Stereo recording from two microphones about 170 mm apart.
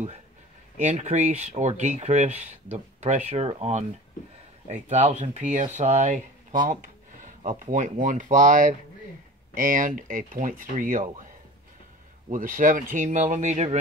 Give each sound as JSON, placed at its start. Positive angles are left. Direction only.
{"t": 0.7, "sound": "speech", "side_deg": -40}
{"t": 12.3, "sound": "speech", "side_deg": -50}